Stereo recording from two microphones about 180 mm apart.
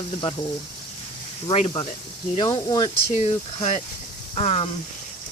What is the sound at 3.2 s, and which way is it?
Speech, 35° left (ahead or behind).